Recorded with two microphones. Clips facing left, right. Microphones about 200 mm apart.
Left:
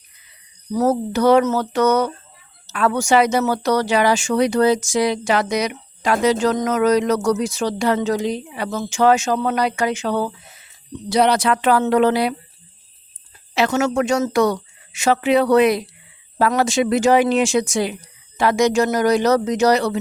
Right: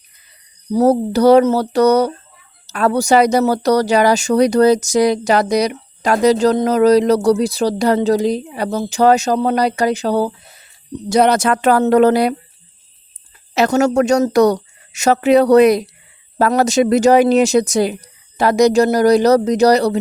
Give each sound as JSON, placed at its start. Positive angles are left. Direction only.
{"t": 0.7, "sound": "speech", "side_deg": -35}
{"t": 13.5, "sound": "speech", "side_deg": -40}